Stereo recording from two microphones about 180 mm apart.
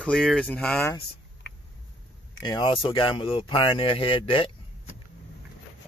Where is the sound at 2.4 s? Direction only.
25° left (ahead or behind).